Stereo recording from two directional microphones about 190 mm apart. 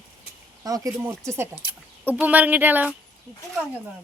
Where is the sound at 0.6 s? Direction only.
20° right (ahead or behind).